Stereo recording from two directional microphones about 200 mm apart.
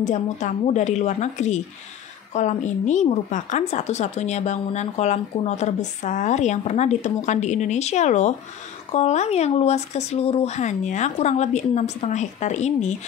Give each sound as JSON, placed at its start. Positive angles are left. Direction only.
{"t": 0.0, "sound": "a woman's voice", "side_deg": 35}